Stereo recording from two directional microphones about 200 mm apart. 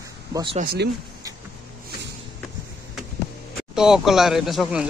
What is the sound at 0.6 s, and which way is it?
Speech, 50° right (ahead or behind).